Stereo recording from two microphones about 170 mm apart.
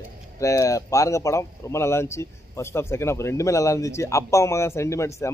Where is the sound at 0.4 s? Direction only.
20° left (ahead or behind).